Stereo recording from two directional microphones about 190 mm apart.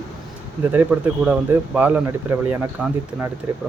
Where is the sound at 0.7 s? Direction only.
5° right (ahead or behind).